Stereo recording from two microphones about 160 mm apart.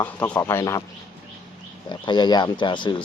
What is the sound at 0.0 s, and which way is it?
Speech, 10° left (ahead or behind).